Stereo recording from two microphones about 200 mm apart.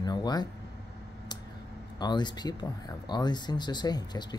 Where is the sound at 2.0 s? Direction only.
20° left (ahead or behind).